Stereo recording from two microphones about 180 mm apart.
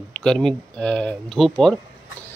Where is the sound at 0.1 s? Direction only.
5° left (ahead or behind).